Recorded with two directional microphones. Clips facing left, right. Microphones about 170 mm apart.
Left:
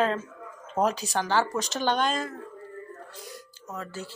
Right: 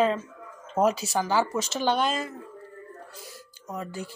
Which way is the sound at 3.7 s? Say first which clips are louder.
Right 2 dB; 15° right (ahead or behind).